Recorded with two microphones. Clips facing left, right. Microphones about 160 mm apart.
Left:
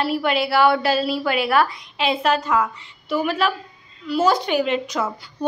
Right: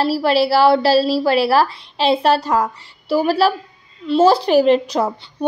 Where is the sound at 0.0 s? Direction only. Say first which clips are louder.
Right 5 dB; 35° right (ahead or behind).